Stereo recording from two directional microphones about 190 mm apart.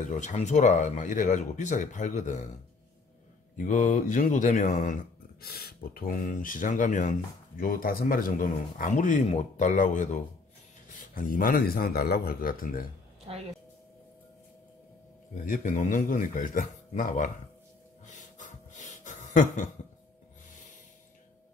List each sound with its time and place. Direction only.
0.1 s speech: 40° left (ahead or behind)
3.5 s speech: 40° left (ahead or behind)
15.4 s speech: 45° left (ahead or behind)
18.0 s a sound: 40° left (ahead or behind)